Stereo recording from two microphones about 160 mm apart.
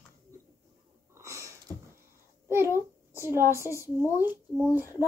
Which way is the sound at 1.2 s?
20° right (ahead or behind).